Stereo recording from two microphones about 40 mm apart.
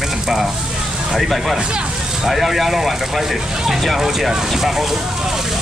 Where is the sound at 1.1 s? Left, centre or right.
Centre.